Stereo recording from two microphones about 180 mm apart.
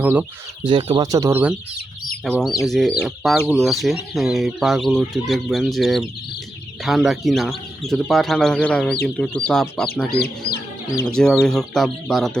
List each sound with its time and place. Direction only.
0.0 s speech: 10° right (ahead or behind)
0.7 s speech: 30° right (ahead or behind)
1.0 s speech: 20° right (ahead or behind)
2.3 s speech: centre (ahead or behind)
10.2 s speech: 60° left (ahead or behind)
11.0 s speech: 5° left (ahead or behind)